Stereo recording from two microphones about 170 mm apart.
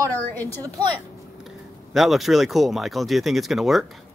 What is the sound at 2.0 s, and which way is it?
A woman's voice, centre (ahead or behind).